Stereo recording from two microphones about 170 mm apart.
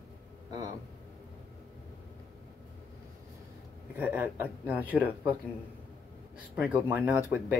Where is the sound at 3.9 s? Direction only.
10° right (ahead or behind).